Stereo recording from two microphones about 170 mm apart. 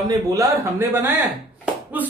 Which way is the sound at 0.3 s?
15° right (ahead or behind).